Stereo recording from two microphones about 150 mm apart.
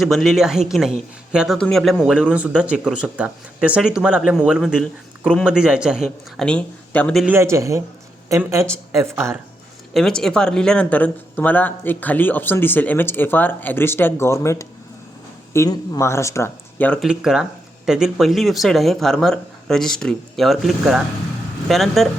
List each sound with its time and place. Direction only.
0.0 s speech: centre (ahead or behind)
7.3 s a man's voice: 20° right (ahead or behind)
9.9 s speech: 5° left (ahead or behind)
17.0 s speech: 5° right (ahead or behind)